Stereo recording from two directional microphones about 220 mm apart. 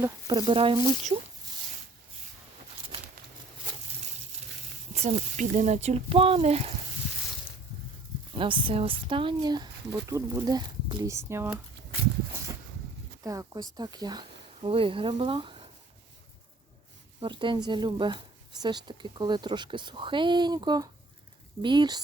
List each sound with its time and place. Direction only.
0.0 s speech: 20° right (ahead or behind)
4.9 s speech: 30° right (ahead or behind)
8.3 s speech: 25° right (ahead or behind)
13.2 s speech: 15° right (ahead or behind)
17.2 s speech: 20° right (ahead or behind)